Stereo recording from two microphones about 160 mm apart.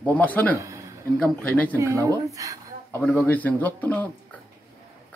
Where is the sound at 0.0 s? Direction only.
10° left (ahead or behind).